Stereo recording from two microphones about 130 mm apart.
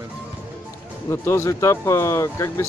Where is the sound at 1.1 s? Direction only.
20° left (ahead or behind).